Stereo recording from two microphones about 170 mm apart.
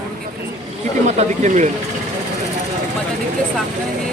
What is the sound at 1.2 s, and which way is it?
Speech, 45° right (ahead or behind).